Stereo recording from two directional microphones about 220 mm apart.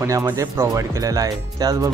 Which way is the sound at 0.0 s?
15° right (ahead or behind).